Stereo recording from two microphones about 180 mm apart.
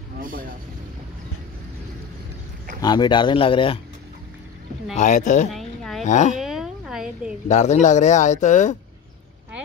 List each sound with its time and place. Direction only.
0.2 s speech: 50° right (ahead or behind)
2.8 s speech: 25° left (ahead or behind)
4.9 s speech: 45° left (ahead or behind)
5.5 s a sound: centre (ahead or behind)
6.0 s speech: 40° left (ahead or behind)
6.3 s a sound: centre (ahead or behind)
7.4 s speech: 40° left (ahead or behind)